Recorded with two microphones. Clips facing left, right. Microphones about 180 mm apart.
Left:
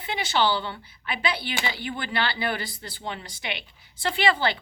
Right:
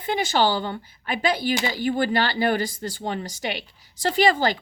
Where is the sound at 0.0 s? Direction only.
45° right (ahead or behind).